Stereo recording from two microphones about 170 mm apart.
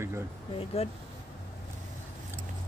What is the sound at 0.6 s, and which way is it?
Speech, 35° left (ahead or behind).